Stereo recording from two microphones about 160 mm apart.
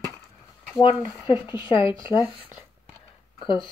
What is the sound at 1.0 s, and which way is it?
Speech, 30° left (ahead or behind).